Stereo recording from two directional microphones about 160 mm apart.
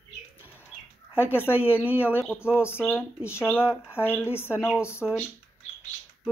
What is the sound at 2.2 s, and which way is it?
Speech, 15° left (ahead or behind).